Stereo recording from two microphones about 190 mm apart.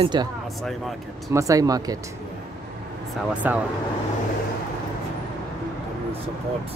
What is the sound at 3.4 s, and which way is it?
Speech, 10° right (ahead or behind).